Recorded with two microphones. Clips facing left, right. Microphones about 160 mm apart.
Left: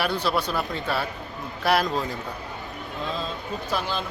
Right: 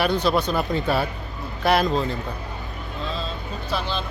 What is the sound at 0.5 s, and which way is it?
Speech, 20° right (ahead or behind).